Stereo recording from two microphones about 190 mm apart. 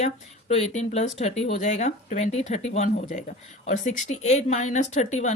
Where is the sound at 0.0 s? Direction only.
35° left (ahead or behind).